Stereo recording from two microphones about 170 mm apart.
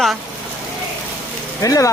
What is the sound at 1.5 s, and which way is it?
Speech, 20° left (ahead or behind).